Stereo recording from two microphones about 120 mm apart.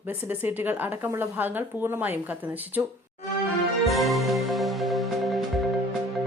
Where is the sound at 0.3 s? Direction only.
15° right (ahead or behind).